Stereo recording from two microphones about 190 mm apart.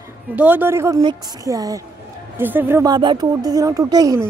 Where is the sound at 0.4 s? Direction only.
10° right (ahead or behind).